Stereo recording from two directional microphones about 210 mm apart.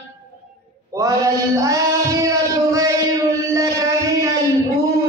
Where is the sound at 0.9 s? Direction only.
15° right (ahead or behind).